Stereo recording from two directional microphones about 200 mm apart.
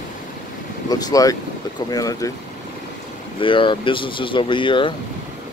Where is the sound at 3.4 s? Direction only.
25° left (ahead or behind).